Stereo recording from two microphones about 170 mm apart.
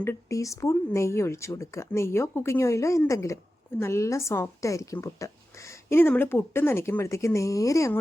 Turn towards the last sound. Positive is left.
turn(degrees=15)  # may be behind; listen again after turning